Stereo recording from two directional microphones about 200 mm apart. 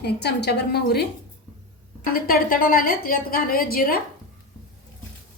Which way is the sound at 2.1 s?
45° left (ahead or behind).